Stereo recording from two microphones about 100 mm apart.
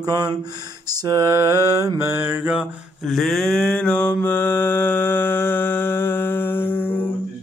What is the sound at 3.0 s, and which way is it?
Mantra, centre (ahead or behind).